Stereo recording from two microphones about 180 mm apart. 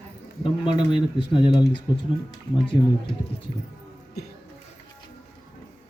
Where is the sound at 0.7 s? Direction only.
25° left (ahead or behind).